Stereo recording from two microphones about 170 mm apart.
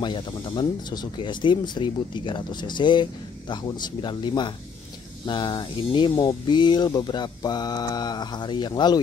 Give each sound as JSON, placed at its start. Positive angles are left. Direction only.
{"t": 0.0, "sound": "speech", "side_deg": 25}